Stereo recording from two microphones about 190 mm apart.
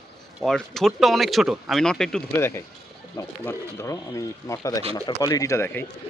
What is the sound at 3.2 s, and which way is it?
Speech, 15° left (ahead or behind).